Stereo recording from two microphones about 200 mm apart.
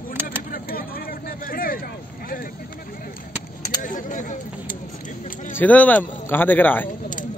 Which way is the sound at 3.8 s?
40° left (ahead or behind).